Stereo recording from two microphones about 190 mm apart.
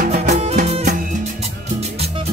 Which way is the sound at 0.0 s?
50° right (ahead or behind).